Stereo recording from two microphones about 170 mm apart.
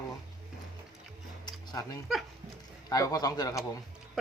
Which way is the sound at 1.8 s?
20° left (ahead or behind).